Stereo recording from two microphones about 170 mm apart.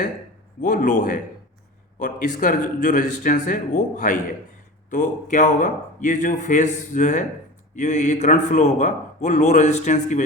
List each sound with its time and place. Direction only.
0.6 s a man's voice: 50° left (ahead or behind)